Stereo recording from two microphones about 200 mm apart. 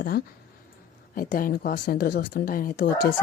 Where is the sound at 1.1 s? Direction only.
45° left (ahead or behind).